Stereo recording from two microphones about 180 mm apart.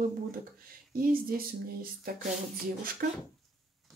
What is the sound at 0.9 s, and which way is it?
Speech, 55° right (ahead or behind).